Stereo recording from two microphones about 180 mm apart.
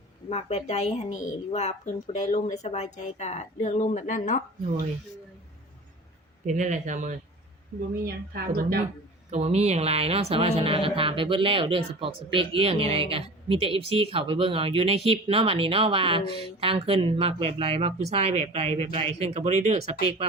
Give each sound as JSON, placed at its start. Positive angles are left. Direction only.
{"t": 0.3, "sound": "speech", "side_deg": 35}
{"t": 6.4, "sound": "speech", "side_deg": -45}
{"t": 8.0, "sound": "a woman's voice", "side_deg": -60}
{"t": 9.3, "sound": "speech", "side_deg": -35}